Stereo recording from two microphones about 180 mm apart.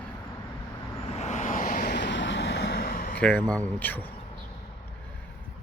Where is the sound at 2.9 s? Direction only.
50° left (ahead or behind).